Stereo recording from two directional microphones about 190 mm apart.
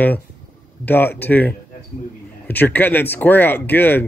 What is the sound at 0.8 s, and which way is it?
Speech, 10° left (ahead or behind).